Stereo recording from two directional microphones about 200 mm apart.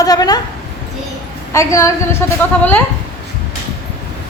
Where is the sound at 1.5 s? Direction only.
15° left (ahead or behind).